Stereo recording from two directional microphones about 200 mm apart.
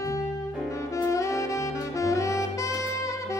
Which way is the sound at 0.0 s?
15° left (ahead or behind).